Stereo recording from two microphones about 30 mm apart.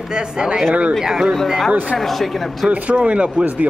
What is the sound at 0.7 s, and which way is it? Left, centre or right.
Speech, right.